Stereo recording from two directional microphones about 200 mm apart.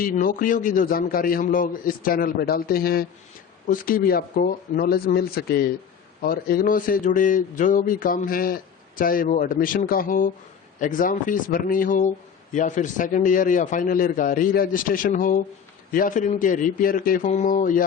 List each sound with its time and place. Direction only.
0.0 s a man's voice: 45° left (ahead or behind)